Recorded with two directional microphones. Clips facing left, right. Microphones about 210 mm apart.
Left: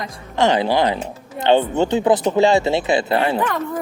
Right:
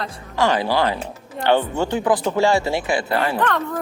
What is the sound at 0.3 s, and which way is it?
Speech, 20° left (ahead or behind).